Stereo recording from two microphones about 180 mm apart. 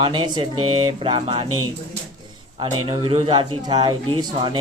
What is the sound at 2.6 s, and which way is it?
Speech, 25° right (ahead or behind).